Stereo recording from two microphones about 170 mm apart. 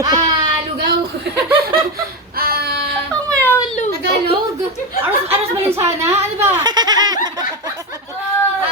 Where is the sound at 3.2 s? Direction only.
10° left (ahead or behind).